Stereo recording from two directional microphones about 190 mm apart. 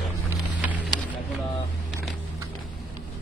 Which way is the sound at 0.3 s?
10° right (ahead or behind).